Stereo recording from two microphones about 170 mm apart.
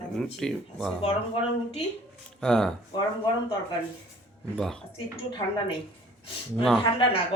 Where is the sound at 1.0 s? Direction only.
35° left (ahead or behind).